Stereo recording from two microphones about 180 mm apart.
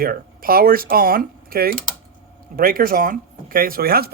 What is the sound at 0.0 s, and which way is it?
Speech, 55° right (ahead or behind).